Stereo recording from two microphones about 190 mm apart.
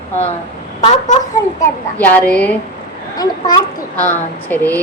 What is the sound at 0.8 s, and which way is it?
Speech, 40° left (ahead or behind).